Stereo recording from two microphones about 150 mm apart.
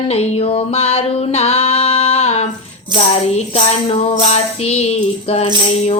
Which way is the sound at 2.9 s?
45° left (ahead or behind).